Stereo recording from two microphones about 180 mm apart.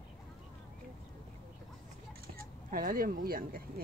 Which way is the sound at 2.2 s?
55° right (ahead or behind).